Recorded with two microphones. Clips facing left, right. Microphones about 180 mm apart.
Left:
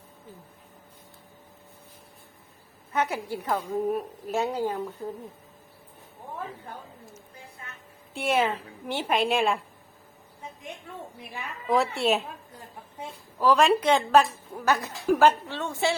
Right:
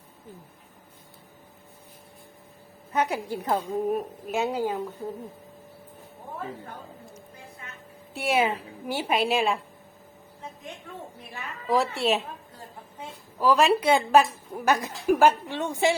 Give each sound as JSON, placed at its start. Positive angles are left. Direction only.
{"t": 2.9, "sound": "a woman's voice", "side_deg": -15}
{"t": 4.3, "sound": "a woman's voice", "side_deg": -5}
{"t": 8.1, "sound": "a woman's voice", "side_deg": -10}
{"t": 11.7, "sound": "speech", "side_deg": 0}
{"t": 13.4, "sound": "a woman's voice", "side_deg": -5}